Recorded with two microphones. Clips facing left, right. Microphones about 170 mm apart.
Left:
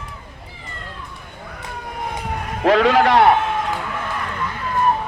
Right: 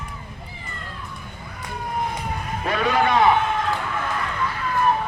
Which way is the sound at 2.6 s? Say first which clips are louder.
Left 7 dB; 90° left.